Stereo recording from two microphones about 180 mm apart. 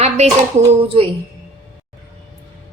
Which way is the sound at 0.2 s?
35° right (ahead or behind).